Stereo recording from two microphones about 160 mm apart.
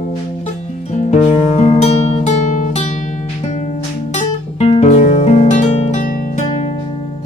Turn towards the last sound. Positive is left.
turn(degrees=50)  # may be behind; listen again after turning